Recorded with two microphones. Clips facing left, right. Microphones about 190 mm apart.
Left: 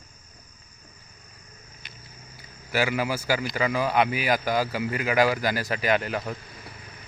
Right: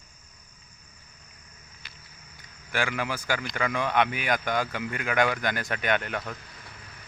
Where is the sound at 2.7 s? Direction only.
5° left (ahead or behind).